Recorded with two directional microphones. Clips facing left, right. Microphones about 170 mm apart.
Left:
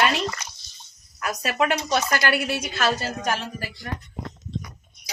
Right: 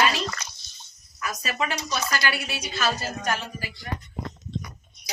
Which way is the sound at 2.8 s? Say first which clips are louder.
Left 1 dB; 80° left.